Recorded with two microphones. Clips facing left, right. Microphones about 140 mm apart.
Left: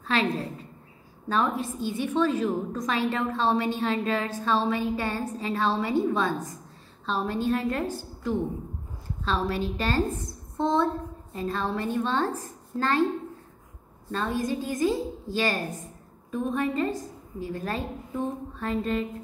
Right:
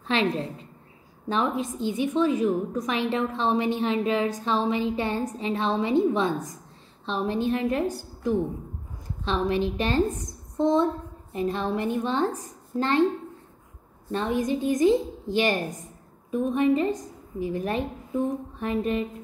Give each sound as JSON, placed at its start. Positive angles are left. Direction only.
{"t": 0.0, "sound": "a woman's voice", "side_deg": -25}
{"t": 7.1, "sound": "a woman's voice", "side_deg": -20}
{"t": 14.1, "sound": "a woman's voice", "side_deg": -20}